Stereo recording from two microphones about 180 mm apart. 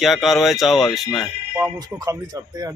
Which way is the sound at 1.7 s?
20° right (ahead or behind).